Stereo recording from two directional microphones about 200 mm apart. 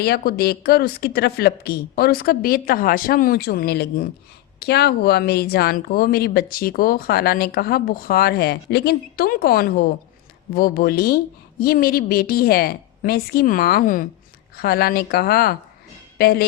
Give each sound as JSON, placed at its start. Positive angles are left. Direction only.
{"t": 0.0, "sound": "speech", "side_deg": 50}